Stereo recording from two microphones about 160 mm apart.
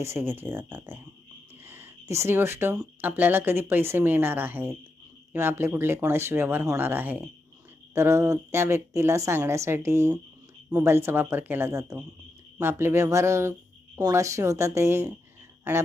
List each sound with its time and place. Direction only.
0.0 s speech: 15° right (ahead or behind)